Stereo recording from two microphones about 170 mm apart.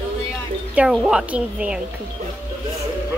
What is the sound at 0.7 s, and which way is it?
A woman's voice, 5° right (ahead or behind).